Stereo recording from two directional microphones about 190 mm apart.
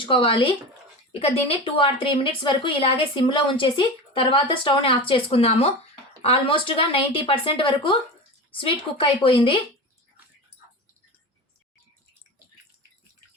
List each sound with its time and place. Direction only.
0.0 s a woman's voice: 25° left (ahead or behind)